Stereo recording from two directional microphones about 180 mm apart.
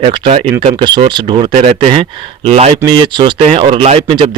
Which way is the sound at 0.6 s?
30° right (ahead or behind).